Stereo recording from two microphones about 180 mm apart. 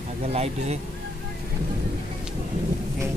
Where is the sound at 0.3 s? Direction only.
35° right (ahead or behind).